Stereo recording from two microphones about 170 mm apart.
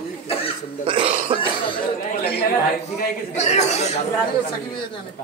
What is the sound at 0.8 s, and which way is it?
Speech, 30° right (ahead or behind).